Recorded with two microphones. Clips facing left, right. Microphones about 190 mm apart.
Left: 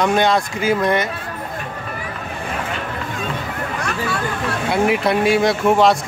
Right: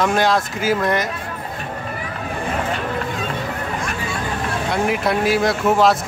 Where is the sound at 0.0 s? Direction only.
Centre (ahead or behind).